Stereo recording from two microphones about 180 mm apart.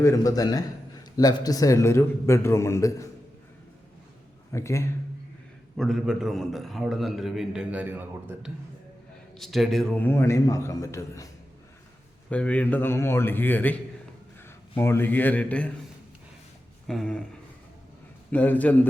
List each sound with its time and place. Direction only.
0.0 s a man's voice: 15° left (ahead or behind)
4.5 s a man's voice: 15° left (ahead or behind)
5.7 s a man's voice: centre (ahead or behind); by 11.3 s 20° left (ahead or behind)
12.3 s a man's voice: 5° left (ahead or behind)
14.8 s a man's voice: 15° left (ahead or behind)
16.8 s speech: centre (ahead or behind)
18.3 s a man's voice: 10° left (ahead or behind)